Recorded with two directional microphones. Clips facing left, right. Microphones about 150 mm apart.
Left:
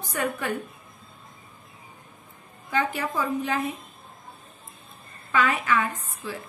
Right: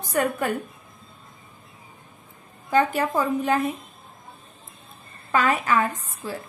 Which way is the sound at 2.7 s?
45° right (ahead or behind).